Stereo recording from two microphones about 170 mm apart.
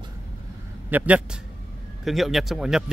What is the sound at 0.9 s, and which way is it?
Speech, 10° right (ahead or behind).